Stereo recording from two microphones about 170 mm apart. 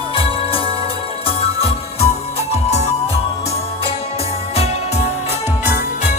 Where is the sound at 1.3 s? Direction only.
35° left (ahead or behind).